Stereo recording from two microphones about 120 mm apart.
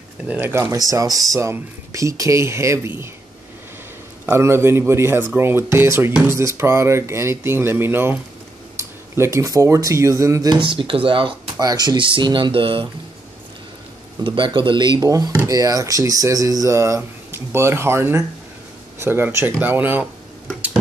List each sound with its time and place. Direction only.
0.3 s speech: 20° right (ahead or behind)
4.3 s speech: 20° right (ahead or behind)
10.5 s speech: 45° right (ahead or behind)
14.2 s speech: 40° right (ahead or behind); by 20.1 s 15° right (ahead or behind)